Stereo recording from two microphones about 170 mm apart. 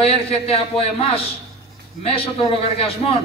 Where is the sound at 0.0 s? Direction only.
35° left (ahead or behind).